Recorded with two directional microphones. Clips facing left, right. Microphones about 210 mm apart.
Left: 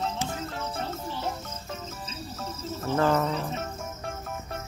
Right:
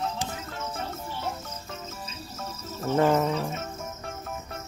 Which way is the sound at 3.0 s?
15° right (ahead or behind).